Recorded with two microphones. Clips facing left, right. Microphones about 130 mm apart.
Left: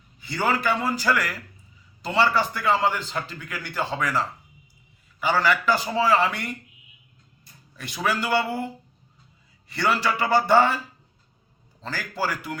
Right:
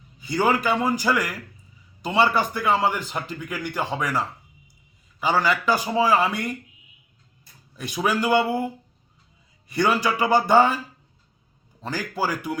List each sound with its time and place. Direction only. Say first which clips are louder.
0.2 s a man's voice: right 3 dB; 15° right (ahead or behind)
5.2 s a man's voice: even; 15° right (ahead or behind)
7.8 s a man's voice: right 3 dB; 15° right (ahead or behind)
11.8 s a man's voice: right 2 dB; 15° right (ahead or behind)